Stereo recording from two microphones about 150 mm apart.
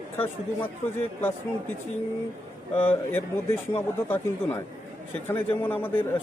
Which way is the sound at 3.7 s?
15° left (ahead or behind).